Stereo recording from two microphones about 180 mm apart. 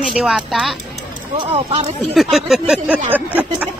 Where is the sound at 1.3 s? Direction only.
30° right (ahead or behind).